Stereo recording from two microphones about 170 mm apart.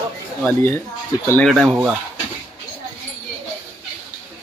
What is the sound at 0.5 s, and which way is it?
Speech, 15° left (ahead or behind).